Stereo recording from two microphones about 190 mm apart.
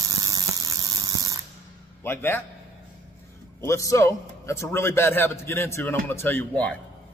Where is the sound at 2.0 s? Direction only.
10° left (ahead or behind).